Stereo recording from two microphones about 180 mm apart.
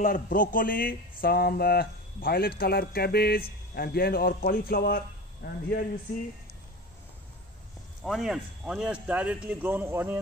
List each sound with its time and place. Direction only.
0.0 s a man's voice: 45° left (ahead or behind)
8.0 s speech: centre (ahead or behind)